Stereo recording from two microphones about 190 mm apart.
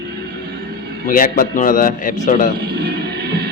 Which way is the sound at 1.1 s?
45° left (ahead or behind).